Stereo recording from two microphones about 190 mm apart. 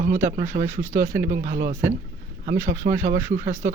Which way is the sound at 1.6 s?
15° right (ahead or behind).